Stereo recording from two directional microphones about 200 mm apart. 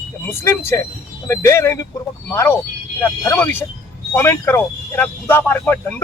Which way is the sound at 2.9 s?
10° left (ahead or behind).